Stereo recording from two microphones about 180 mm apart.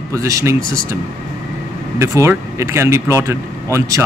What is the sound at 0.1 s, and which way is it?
Speech, 15° right (ahead or behind).